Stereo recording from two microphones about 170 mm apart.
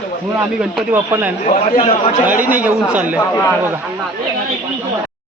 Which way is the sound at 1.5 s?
50° left (ahead or behind).